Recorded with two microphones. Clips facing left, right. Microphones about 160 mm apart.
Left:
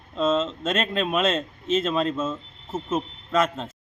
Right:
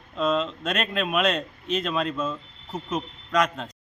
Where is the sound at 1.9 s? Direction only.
35° left (ahead or behind).